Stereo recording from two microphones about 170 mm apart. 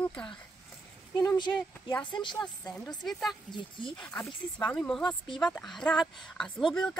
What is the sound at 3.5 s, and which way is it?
Speech, 30° left (ahead or behind).